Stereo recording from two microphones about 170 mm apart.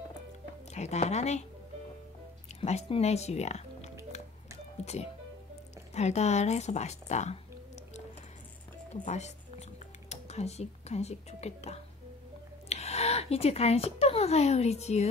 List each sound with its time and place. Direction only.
0.7 s a woman's voice: 40° left (ahead or behind)
2.6 s a woman's voice: 40° left (ahead or behind)
8.9 s a sound: 45° left (ahead or behind)
12.6 s speech: 40° left (ahead or behind)